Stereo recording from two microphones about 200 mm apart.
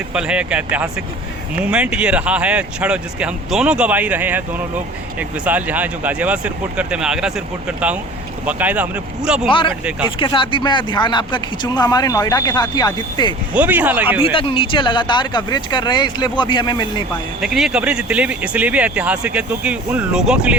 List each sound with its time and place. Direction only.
0.1 s speech: 5° right (ahead or behind)
9.5 s speech: 25° left (ahead or behind)
13.5 s speech: 10° right (ahead or behind)
14.2 s speech: 25° left (ahead or behind)
17.4 s speech: 5° right (ahead or behind)